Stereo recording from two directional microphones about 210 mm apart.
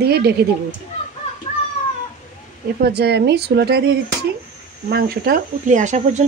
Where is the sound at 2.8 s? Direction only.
50° right (ahead or behind).